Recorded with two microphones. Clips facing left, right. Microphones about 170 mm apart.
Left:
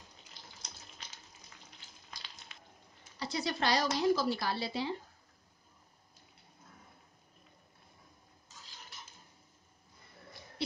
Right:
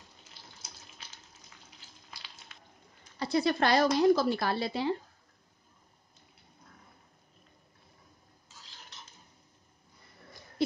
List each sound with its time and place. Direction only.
0.3 s water tap: 5° right (ahead or behind)
3.2 s speech: 55° right (ahead or behind)